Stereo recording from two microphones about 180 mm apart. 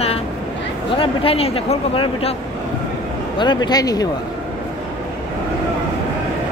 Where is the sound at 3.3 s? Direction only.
25° left (ahead or behind).